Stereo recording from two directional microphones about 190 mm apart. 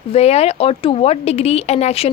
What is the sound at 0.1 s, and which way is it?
A woman's voice, 35° left (ahead or behind).